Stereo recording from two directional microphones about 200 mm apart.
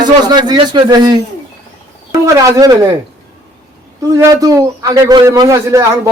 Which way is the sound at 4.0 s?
15° right (ahead or behind).